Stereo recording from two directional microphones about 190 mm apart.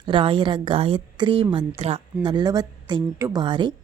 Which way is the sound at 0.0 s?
25° right (ahead or behind).